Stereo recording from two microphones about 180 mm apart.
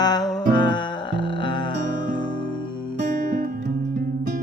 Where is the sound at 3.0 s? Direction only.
50° right (ahead or behind).